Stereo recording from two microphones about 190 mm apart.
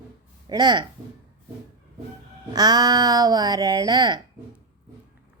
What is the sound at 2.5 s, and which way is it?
Speech, 20° right (ahead or behind).